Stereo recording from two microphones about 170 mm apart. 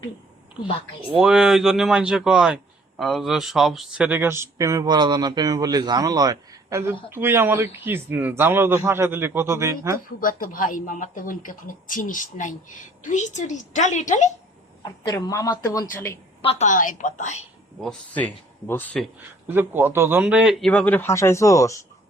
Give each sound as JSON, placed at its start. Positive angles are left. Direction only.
{"t": 1.2, "sound": "speech", "side_deg": -5}
{"t": 10.2, "sound": "a woman's voice", "side_deg": 55}
{"t": 14.8, "sound": "a woman's voice", "side_deg": 25}
{"t": 16.4, "sound": "a woman's voice", "side_deg": 35}
{"t": 16.6, "sound": "a woman's voice", "side_deg": 50}
{"t": 17.7, "sound": "a man's voice", "side_deg": 5}
{"t": 19.5, "sound": "a man's voice", "side_deg": -15}